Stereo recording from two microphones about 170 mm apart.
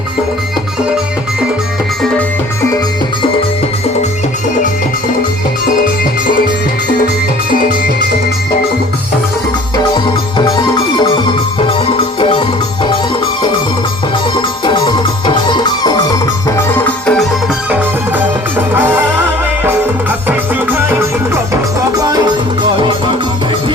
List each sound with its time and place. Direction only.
9.7 s music: 25° left (ahead or behind)
14.3 s music: 25° left (ahead or behind); by 17.2 s 10° left (ahead or behind)
18.7 s music: 15° right (ahead or behind)
20.2 s music: 10° right (ahead or behind)